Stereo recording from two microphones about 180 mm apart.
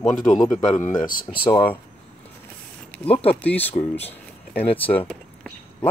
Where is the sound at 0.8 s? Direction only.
50° left (ahead or behind).